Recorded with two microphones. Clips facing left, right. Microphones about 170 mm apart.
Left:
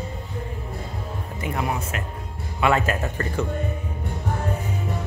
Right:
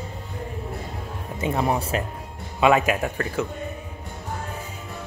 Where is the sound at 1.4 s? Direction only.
30° right (ahead or behind).